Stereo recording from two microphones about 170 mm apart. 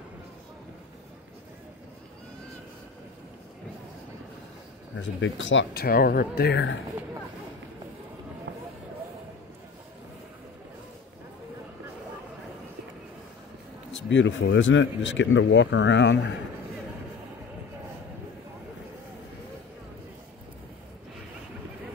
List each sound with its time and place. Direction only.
5.0 s speech: 90° left
14.0 s speech: 90° left